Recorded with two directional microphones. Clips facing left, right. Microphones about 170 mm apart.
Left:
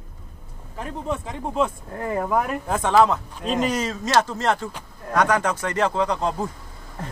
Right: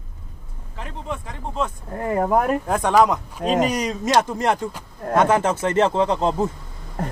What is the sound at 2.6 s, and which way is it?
Speech, 10° right (ahead or behind).